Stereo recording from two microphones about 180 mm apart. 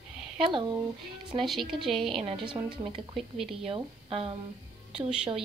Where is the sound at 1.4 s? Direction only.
Centre (ahead or behind).